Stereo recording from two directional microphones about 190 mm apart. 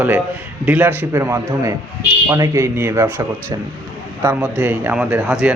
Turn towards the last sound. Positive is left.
turn(degrees=-5)  # may be behind; listen again after turning